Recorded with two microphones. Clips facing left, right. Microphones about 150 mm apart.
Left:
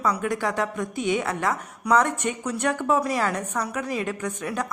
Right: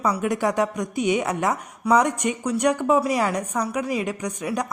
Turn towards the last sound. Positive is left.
turn(degrees=-15)  # may be behind; listen again after turning